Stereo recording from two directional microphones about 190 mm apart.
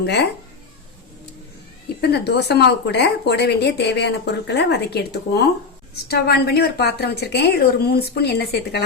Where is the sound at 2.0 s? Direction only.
60° left (ahead or behind).